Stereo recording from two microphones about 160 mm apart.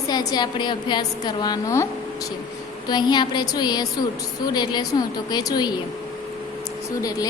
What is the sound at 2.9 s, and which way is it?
A woman's voice, 25° left (ahead or behind).